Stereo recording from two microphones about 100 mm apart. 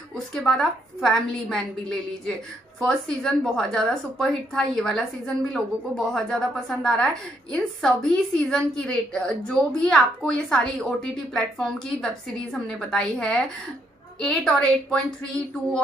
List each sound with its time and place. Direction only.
0.3 s a woman's voice: 5° left (ahead or behind)